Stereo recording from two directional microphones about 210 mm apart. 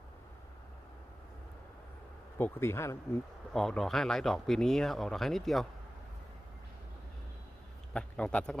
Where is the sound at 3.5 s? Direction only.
Centre (ahead or behind).